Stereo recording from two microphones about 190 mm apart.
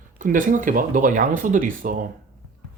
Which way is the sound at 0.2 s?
45° right (ahead or behind).